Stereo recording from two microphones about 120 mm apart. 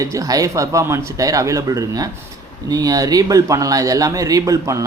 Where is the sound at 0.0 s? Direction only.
25° right (ahead or behind).